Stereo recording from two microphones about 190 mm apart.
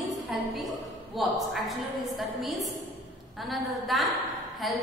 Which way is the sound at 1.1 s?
Centre (ahead or behind).